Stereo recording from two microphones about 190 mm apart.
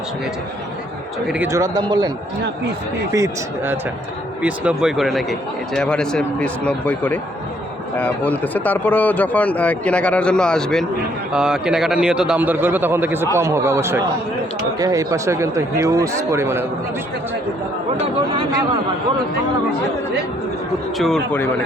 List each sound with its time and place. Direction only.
1.3 s speech: 15° right (ahead or behind)
4.4 s speech: 5° right (ahead or behind)
21.0 s speech: 5° left (ahead or behind)